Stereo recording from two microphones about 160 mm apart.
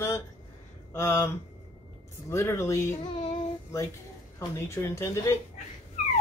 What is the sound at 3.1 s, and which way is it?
Child singing, 35° left (ahead or behind).